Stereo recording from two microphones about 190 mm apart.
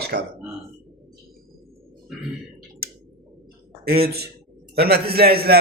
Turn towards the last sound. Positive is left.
turn(degrees=-55)  # may be behind; listen again after turning